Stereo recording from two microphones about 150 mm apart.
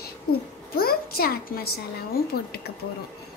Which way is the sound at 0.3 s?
90° left.